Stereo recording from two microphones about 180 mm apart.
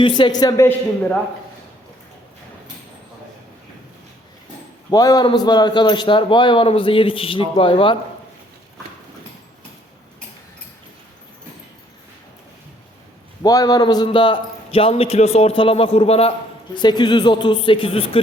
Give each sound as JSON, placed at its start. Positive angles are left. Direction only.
{"t": 0.0, "sound": "a man's voice", "side_deg": 25}
{"t": 4.9, "sound": "a man's voice", "side_deg": 20}
{"t": 13.4, "sound": "a man's voice", "side_deg": 20}